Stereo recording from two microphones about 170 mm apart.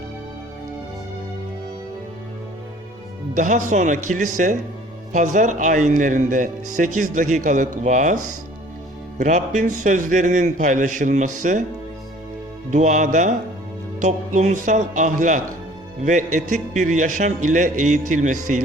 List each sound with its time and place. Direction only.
3.3 s speech: 45° right (ahead or behind)
12.7 s speech: 45° right (ahead or behind)